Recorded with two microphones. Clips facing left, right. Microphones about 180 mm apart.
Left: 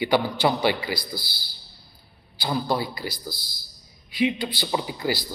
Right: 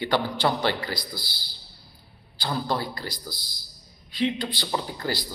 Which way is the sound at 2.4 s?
10° left (ahead or behind).